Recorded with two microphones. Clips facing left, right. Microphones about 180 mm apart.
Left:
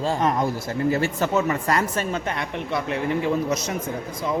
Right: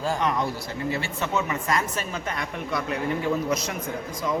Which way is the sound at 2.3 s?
25° left (ahead or behind).